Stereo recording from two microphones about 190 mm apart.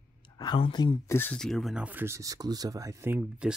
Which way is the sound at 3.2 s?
5° right (ahead or behind).